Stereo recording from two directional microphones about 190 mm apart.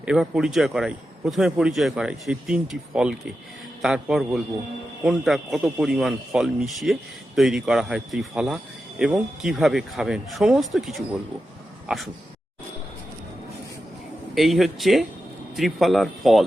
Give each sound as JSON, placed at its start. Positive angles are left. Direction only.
{"t": 0.0, "sound": "speech", "side_deg": -5}
{"t": 14.3, "sound": "speech", "side_deg": 0}